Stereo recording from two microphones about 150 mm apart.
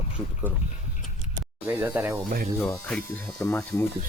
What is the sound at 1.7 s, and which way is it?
Speech, 10° right (ahead or behind).